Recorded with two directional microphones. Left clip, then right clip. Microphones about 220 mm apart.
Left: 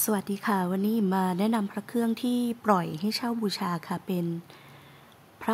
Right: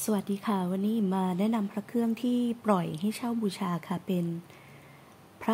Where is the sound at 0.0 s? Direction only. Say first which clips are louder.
Left 2 dB; 5° left (ahead or behind).